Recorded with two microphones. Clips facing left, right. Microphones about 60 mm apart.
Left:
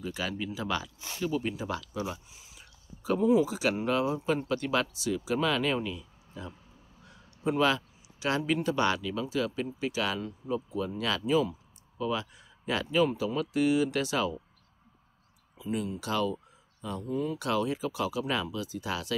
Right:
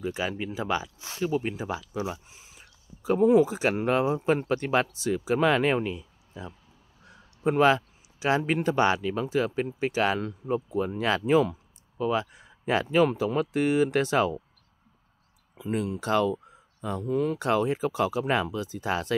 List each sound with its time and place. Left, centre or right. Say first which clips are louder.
0.0 s speech: right 4 dB; right
2.2 s whispering: right 2 dB; right
3.2 s speech: right 5 dB; right
3.4 s speech: right 3 dB; right
6.4 s speech: right 2 dB; centre
7.1 s a sound: right 4 dB; right
8.6 s speech: right 4 dB; right
11.2 s speech: right 4 dB; right
12.0 s speech: right 5 dB; right
15.5 s speech: right 4 dB; right
16.0 s speech: right 7 dB; right
17.1 s speech: right 5 dB; right
17.4 s speech: right 5 dB; right